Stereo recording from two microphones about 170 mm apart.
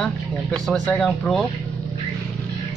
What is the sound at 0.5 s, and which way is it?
Speech, 5° left (ahead or behind).